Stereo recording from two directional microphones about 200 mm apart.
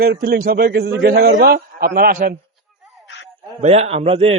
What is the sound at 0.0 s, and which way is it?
A man's voice, 50° right (ahead or behind).